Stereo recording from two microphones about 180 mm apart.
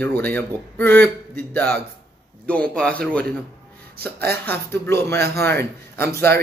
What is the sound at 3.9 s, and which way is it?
Speech, 60° right (ahead or behind).